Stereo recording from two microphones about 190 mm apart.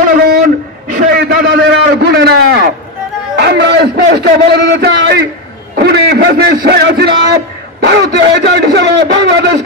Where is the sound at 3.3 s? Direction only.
60° right (ahead or behind).